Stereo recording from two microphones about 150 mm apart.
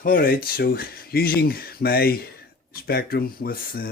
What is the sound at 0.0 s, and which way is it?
Speech, 70° left (ahead or behind).